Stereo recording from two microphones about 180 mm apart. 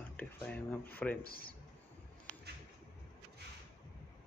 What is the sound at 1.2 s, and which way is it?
Speech, 55° left (ahead or behind).